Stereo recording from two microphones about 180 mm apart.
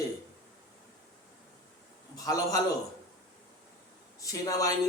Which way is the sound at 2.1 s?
20° left (ahead or behind).